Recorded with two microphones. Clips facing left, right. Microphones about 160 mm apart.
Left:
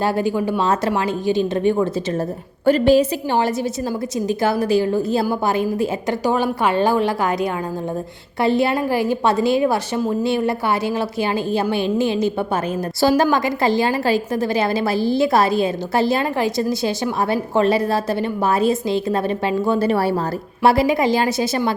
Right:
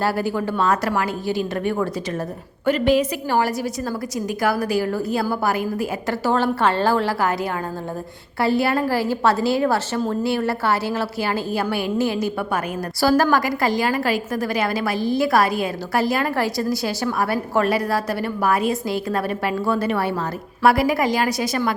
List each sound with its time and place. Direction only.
0.0 s a woman's voice: 20° left (ahead or behind)
2.6 s a woman's voice: 35° left (ahead or behind); by 7.3 s 15° left (ahead or behind)
8.4 s a woman's voice: 20° left (ahead or behind)